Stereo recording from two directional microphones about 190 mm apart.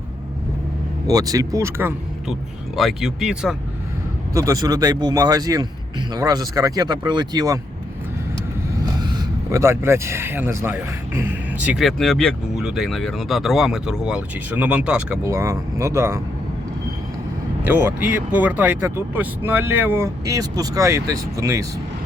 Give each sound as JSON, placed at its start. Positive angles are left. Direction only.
{"t": 1.0, "sound": "speech", "side_deg": -20}
{"t": 2.7, "sound": "speech", "side_deg": 0}
{"t": 4.4, "sound": "speech", "side_deg": -20}
{"t": 9.0, "sound": "speech", "side_deg": -20}
{"t": 17.6, "sound": "speech", "side_deg": -10}